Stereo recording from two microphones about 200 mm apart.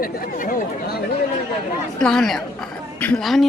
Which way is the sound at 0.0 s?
45° left (ahead or behind).